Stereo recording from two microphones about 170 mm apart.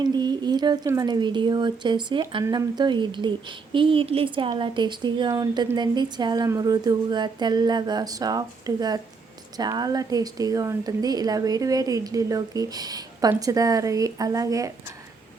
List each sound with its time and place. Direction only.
0.0 s speech: 25° right (ahead or behind)